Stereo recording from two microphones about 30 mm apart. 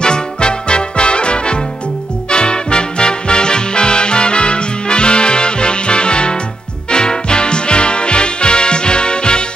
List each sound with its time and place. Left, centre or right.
0.0 s music: left